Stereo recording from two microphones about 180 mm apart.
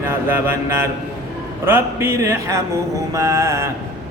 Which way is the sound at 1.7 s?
10° right (ahead or behind).